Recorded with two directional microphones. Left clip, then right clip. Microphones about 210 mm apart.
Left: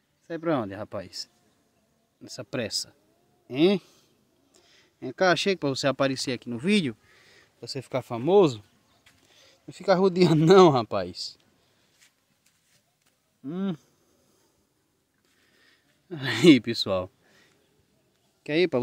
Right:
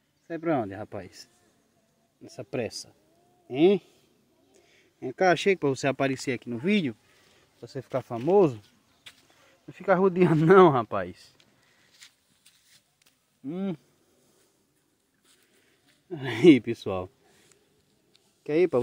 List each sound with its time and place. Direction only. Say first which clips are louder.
0.3 s speech: even; 10° left (ahead or behind)
9.1 s a sound: right 10 dB; 45° right (ahead or behind)
9.5 s speech: left 1 dB; 15° left (ahead or behind)
12.0 s a sound: right 8 dB; 25° right (ahead or behind)
13.5 s speech: left 1 dB; 15° left (ahead or behind)
16.1 s speech: even; 20° left (ahead or behind)
18.4 s speech: even; 20° left (ahead or behind)